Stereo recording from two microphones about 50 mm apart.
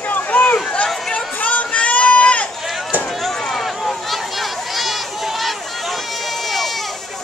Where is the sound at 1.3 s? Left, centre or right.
Left.